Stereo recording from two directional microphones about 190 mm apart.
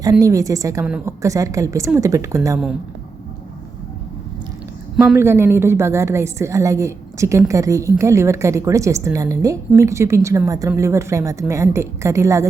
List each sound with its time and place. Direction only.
0.0 s a woman's voice: 20° right (ahead or behind)
5.1 s a woman's voice: 15° right (ahead or behind)